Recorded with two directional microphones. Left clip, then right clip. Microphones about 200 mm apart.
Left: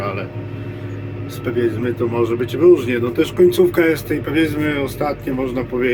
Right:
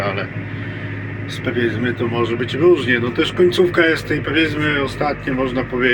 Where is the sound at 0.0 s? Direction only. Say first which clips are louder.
Right 2 dB; 10° left (ahead or behind).